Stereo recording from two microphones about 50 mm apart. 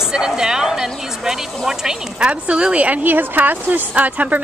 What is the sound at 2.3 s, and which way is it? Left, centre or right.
A woman's voice, right.